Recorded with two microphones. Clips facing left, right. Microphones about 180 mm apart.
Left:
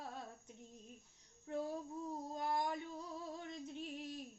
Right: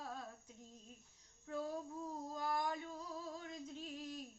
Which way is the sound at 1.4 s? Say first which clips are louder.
Left 1 dB; 25° left (ahead or behind).